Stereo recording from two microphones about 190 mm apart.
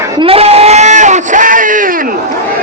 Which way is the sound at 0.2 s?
30° right (ahead or behind).